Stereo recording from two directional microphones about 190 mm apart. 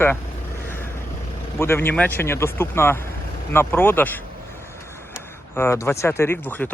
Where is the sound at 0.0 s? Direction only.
10° left (ahead or behind).